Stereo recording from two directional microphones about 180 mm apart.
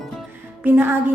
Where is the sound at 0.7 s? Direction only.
10° right (ahead or behind).